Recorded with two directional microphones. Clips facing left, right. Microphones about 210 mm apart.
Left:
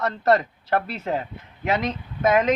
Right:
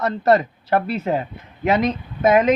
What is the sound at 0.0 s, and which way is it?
Speech, 5° right (ahead or behind).